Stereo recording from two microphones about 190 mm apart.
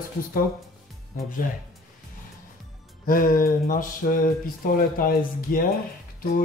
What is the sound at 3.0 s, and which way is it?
Speech, 45° left (ahead or behind).